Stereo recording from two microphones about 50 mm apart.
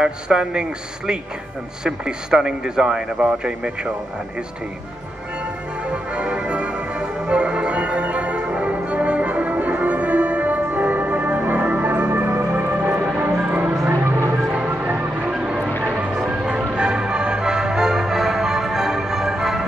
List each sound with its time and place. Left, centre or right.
0.0 s a man's voice: centre
6.1 s music: right
15.2 s music: centre